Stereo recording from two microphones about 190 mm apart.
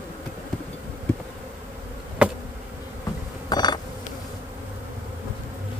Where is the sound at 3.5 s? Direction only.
20° left (ahead or behind).